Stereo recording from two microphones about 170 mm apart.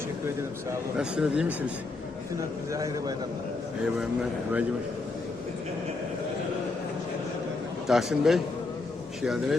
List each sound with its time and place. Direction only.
0.9 s speech: 5° right (ahead or behind)
2.7 s a man's voice: 20° right (ahead or behind)
4.0 s speech: 5° right (ahead or behind)
7.9 s speech: centre (ahead or behind)